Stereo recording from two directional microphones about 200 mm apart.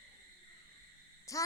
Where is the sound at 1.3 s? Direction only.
15° left (ahead or behind).